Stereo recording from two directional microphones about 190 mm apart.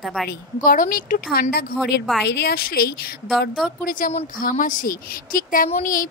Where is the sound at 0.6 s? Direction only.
45° left (ahead or behind).